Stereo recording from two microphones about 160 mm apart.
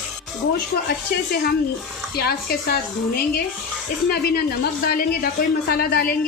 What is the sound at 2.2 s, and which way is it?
A woman's voice, 70° left (ahead or behind).